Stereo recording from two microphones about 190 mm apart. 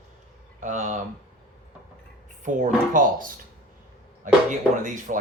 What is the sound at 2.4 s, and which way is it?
Speech, 40° right (ahead or behind).